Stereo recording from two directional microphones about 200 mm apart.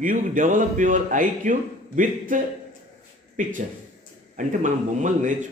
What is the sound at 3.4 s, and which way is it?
A man's voice, 40° right (ahead or behind).